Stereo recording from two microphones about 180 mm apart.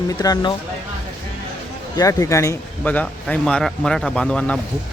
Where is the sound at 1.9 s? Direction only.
20° left (ahead or behind).